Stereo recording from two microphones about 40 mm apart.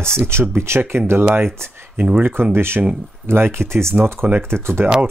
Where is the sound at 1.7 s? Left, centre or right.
Right.